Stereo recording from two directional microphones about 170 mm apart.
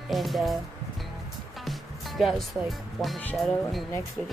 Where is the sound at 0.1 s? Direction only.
Centre (ahead or behind).